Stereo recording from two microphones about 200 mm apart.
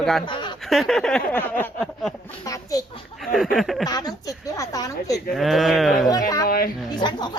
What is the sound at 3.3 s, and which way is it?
Speech, centre (ahead or behind).